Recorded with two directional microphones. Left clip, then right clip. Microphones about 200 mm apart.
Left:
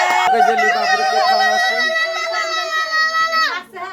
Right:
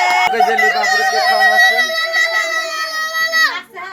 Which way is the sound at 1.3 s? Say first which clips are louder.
Right 4 dB; 10° right (ahead or behind).